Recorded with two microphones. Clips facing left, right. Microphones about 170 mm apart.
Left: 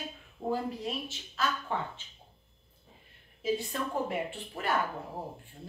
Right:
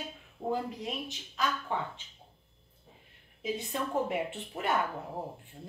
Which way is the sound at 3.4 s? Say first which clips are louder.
Left 2 dB; 20° right (ahead or behind).